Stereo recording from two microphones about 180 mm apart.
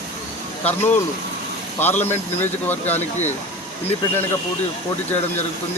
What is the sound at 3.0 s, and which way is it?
Speech, 40° left (ahead or behind).